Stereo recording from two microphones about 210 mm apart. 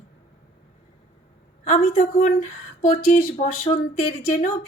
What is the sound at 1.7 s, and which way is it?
Speech, 40° left (ahead or behind).